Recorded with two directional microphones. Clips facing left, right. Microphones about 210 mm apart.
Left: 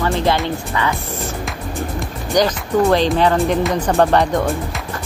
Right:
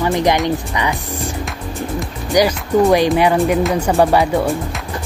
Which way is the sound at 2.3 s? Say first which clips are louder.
Right 2 dB; 10° right (ahead or behind).